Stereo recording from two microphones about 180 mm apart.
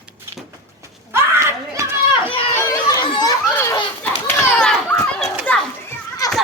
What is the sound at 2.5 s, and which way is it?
Speech, 20° left (ahead or behind).